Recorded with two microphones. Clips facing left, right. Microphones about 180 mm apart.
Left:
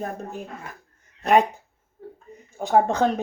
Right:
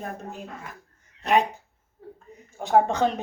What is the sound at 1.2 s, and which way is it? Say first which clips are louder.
Speech: left 3 dB; 50° left (ahead or behind).